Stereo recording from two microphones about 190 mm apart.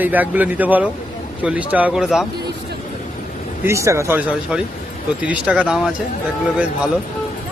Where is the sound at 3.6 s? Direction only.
15° right (ahead or behind).